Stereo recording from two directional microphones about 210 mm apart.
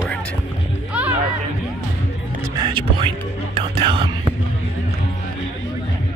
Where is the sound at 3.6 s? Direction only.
25° right (ahead or behind).